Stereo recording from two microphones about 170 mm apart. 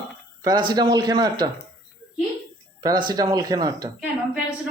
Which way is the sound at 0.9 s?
20° right (ahead or behind).